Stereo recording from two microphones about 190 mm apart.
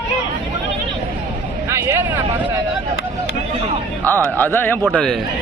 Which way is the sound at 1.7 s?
15° right (ahead or behind).